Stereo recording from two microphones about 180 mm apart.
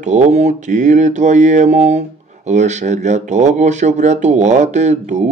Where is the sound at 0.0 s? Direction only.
40° right (ahead or behind).